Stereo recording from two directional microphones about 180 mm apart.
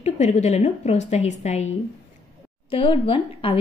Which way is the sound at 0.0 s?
40° left (ahead or behind).